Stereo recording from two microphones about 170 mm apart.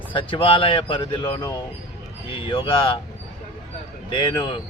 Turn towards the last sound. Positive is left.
turn(degrees=25)  # may be behind; listen again after turning